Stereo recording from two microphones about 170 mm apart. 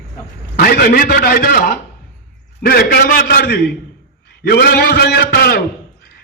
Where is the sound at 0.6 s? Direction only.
65° left (ahead or behind).